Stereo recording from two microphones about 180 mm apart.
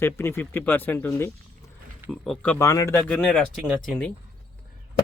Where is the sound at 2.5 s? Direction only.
15° left (ahead or behind).